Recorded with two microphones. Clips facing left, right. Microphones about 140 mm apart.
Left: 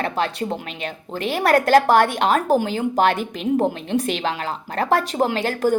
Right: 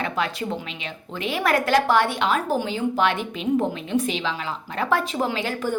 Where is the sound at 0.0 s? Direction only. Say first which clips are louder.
Left 3 dB; 35° left (ahead or behind).